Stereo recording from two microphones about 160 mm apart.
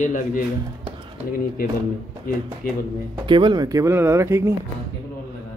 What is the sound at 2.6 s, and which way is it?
Speech, 65° left (ahead or behind).